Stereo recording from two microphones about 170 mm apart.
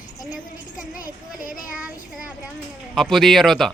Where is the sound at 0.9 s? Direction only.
55° left (ahead or behind).